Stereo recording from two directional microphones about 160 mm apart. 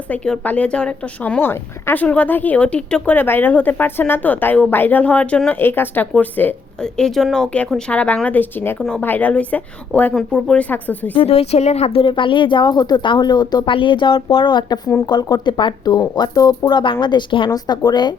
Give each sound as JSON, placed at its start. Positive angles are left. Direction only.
{"t": 0.1, "sound": "speech", "side_deg": 10}
{"t": 11.1, "sound": "speech", "side_deg": 35}